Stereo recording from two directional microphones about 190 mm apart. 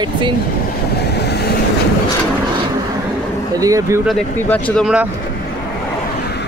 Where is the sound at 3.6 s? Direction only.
15° right (ahead or behind).